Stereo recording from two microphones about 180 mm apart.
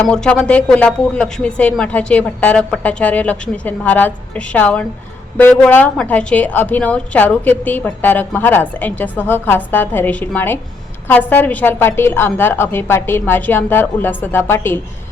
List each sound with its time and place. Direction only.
0.0 s a woman's voice: 5° left (ahead or behind)